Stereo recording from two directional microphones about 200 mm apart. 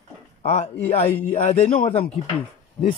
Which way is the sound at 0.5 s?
30° left (ahead or behind).